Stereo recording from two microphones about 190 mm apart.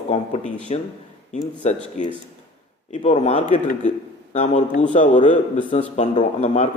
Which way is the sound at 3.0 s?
35° left (ahead or behind).